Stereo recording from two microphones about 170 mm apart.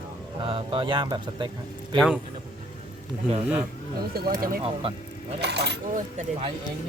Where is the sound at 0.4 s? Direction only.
30° right (ahead or behind).